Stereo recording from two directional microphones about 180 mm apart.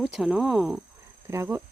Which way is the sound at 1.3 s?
15° right (ahead or behind).